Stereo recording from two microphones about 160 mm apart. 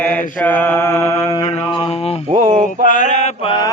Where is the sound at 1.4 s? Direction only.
40° left (ahead or behind).